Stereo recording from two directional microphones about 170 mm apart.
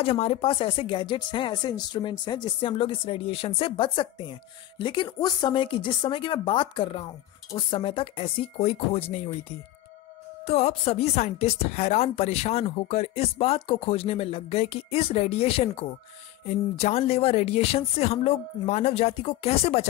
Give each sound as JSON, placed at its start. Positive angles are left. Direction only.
{"t": 0.0, "sound": "speech", "side_deg": 35}
{"t": 10.4, "sound": "speech", "side_deg": 40}